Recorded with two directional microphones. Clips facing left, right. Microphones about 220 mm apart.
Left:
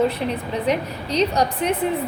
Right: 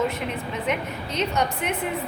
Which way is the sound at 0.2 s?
35° left (ahead or behind).